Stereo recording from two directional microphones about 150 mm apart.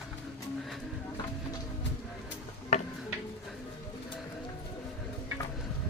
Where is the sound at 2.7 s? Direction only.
45° left (ahead or behind).